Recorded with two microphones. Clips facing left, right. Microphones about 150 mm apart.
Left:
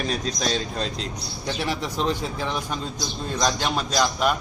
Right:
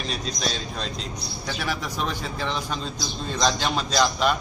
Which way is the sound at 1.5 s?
25° left (ahead or behind).